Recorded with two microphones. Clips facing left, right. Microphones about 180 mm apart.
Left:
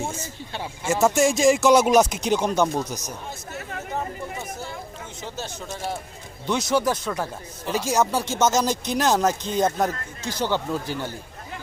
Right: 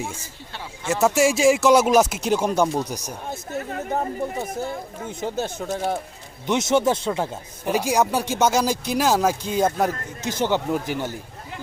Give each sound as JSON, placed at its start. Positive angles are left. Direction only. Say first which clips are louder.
{"t": 0.9, "sound": "speech", "louder": "right 1 dB", "side_deg": -5}
{"t": 3.7, "sound": "chatter", "louder": "right 5 dB", "side_deg": -35}
{"t": 5.0, "sound": "speech", "louder": "right 10 dB", "side_deg": -55}
{"t": 6.5, "sound": "speech", "louder": "right 3 dB", "side_deg": -25}
{"t": 7.7, "sound": "speech", "louder": "right 2 dB", "side_deg": -10}